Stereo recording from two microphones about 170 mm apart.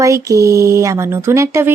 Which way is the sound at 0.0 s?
20° right (ahead or behind).